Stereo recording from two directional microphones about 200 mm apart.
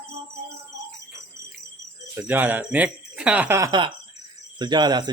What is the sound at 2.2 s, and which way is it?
Speech, 10° right (ahead or behind).